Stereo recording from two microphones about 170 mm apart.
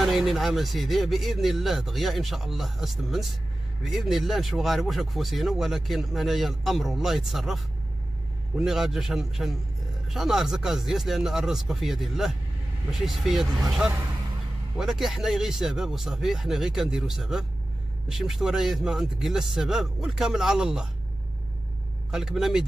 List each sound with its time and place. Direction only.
0.0 s speech: centre (ahead or behind)
22.1 s speech: centre (ahead or behind)